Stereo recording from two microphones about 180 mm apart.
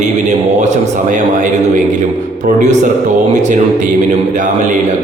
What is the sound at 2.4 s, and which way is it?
Speech, 40° right (ahead or behind).